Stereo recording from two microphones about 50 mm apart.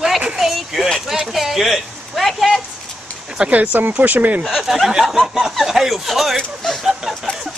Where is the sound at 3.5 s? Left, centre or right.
Right.